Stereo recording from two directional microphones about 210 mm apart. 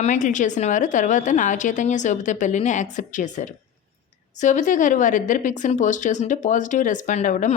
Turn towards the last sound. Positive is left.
turn(degrees=35)  # may be behind; listen again after turning